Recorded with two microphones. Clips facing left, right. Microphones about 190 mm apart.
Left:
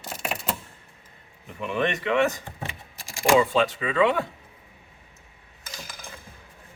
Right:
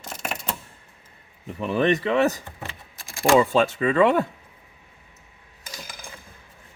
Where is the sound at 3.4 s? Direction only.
45° right (ahead or behind).